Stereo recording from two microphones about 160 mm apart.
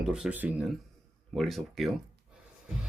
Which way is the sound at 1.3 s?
Centre (ahead or behind).